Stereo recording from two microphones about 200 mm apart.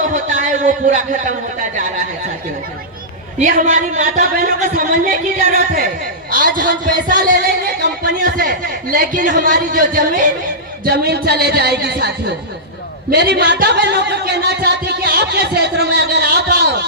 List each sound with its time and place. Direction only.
0.0 s a sound: 40° right (ahead or behind)
3.4 s speech: 40° right (ahead or behind)
10.8 s a man's voice: 55° right (ahead or behind)